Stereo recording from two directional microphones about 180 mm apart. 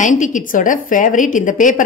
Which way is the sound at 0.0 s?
45° left (ahead or behind).